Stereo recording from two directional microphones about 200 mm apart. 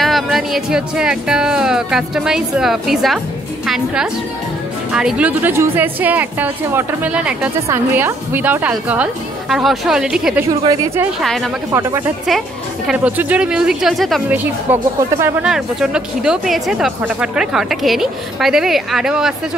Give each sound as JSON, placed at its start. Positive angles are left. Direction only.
{"t": 0.0, "sound": "a woman's voice", "side_deg": 0}
{"t": 10.6, "sound": "a woman's voice", "side_deg": -20}
{"t": 11.1, "sound": "speech", "side_deg": 0}